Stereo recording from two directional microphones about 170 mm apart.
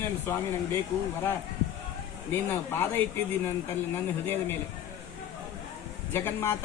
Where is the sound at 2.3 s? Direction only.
15° left (ahead or behind).